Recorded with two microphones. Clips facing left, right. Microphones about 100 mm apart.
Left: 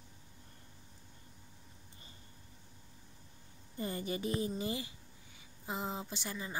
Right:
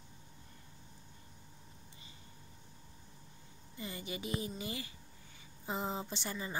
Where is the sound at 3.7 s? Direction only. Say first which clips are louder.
Left 5 dB; 40° left (ahead or behind).